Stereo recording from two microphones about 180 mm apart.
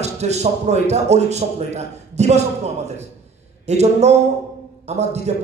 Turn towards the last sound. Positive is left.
turn(degrees=-40)  # may be behind; listen again after turning